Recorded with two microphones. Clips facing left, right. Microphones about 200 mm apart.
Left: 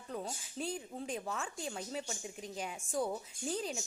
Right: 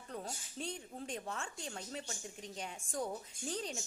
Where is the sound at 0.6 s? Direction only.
5° left (ahead or behind).